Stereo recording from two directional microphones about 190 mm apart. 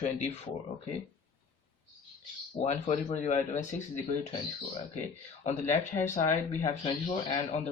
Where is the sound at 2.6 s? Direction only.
35° left (ahead or behind).